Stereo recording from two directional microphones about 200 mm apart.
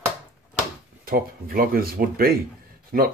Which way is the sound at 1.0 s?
45° right (ahead or behind).